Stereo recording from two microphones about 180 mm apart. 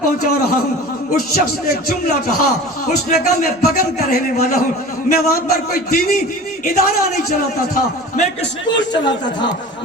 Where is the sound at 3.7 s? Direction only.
55° left (ahead or behind).